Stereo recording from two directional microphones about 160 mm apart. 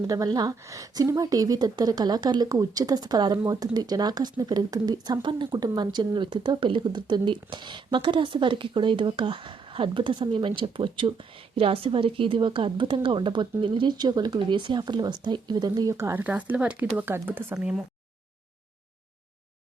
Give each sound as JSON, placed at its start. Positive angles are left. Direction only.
{"t": 0.1, "sound": "speech", "side_deg": -25}